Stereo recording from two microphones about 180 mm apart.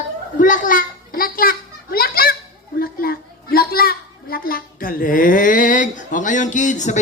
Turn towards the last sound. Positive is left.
turn(degrees=40)  # may be behind; listen again after turning